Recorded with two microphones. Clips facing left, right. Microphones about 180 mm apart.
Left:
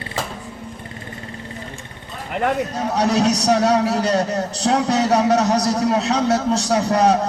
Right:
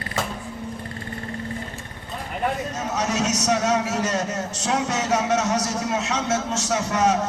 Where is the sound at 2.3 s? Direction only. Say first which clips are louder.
Left 5 dB; 75° left (ahead or behind).